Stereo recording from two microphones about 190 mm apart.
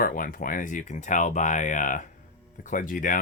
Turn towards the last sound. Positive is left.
turn(degrees=45)  # may be behind; listen again after turning